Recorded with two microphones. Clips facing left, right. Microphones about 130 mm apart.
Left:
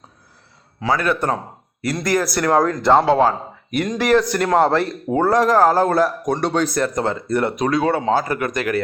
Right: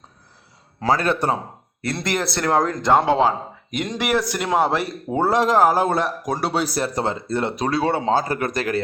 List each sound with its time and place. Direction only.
0.9 s a man's voice: 25° right (ahead or behind); by 4.9 s 10° right (ahead or behind)
5.1 s speech: 25° right (ahead or behind)
6.2 s a man's voice: 5° right (ahead or behind)
6.8 s speech: 25° right (ahead or behind)